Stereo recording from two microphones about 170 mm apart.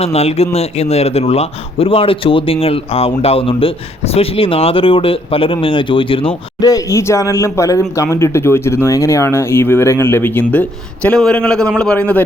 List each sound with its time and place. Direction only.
0.0 s speech: 35° left (ahead or behind)
6.7 s speech: 20° left (ahead or behind)